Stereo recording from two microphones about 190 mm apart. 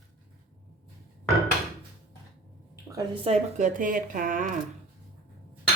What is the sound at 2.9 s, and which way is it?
Speech, 25° right (ahead or behind).